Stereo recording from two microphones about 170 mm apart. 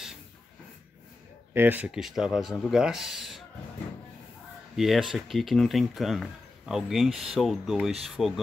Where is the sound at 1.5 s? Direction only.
10° right (ahead or behind).